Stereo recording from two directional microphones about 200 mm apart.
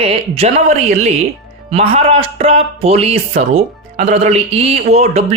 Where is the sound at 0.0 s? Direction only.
30° right (ahead or behind).